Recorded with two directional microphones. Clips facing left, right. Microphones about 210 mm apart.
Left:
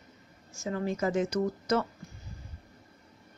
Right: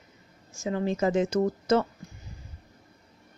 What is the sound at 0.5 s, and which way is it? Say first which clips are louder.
Speech: right 4 dB; 20° right (ahead or behind).